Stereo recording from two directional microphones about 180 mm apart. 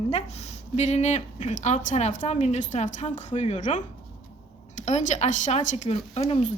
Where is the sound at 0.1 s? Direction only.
35° left (ahead or behind).